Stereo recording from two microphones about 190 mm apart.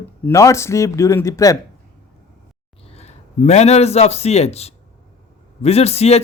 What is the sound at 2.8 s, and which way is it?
A man's voice, 35° left (ahead or behind).